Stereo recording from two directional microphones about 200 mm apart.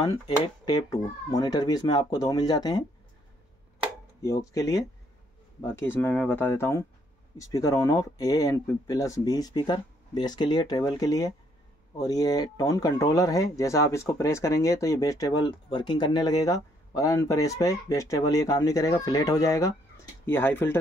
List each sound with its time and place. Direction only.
0.0 s speech: 20° left (ahead or behind)
4.6 s speech: 15° left (ahead or behind)